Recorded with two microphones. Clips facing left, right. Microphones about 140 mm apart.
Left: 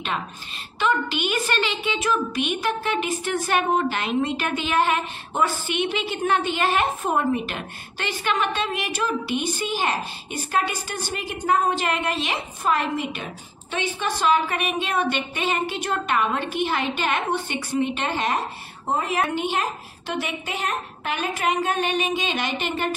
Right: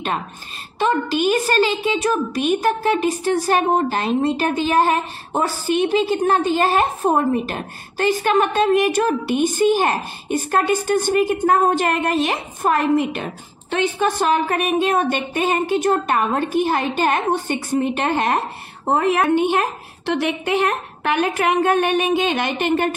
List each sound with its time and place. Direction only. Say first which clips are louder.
0.7 s a woman's voice: right 5 dB; 40° right (ahead or behind)